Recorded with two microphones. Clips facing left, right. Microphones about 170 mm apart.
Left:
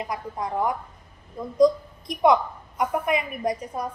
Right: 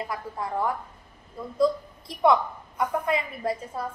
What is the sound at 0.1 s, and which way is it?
A woman's voice, 15° left (ahead or behind).